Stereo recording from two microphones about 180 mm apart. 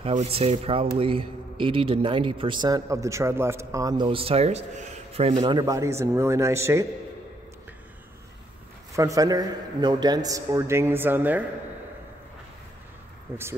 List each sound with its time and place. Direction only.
0.1 s speech: 35° right (ahead or behind); by 6.9 s 15° right (ahead or behind)
8.9 s speech: 20° right (ahead or behind)
13.3 s speech: 15° right (ahead or behind)